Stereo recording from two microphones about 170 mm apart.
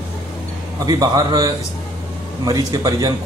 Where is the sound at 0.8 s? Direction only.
20° right (ahead or behind).